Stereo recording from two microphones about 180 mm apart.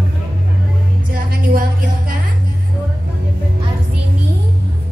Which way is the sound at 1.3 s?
50° right (ahead or behind).